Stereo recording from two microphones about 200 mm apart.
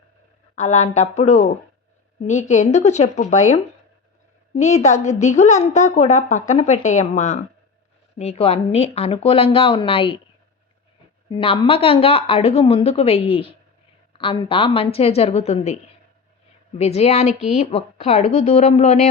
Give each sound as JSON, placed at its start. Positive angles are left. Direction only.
{"t": 0.5, "sound": "a woman's voice", "side_deg": 35}
{"t": 11.3, "sound": "a woman's voice", "side_deg": 25}